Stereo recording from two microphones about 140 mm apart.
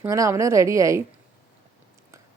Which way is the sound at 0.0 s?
20° right (ahead or behind).